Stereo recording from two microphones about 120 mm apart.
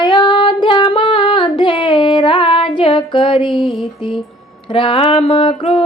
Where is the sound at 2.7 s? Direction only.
45° left (ahead or behind).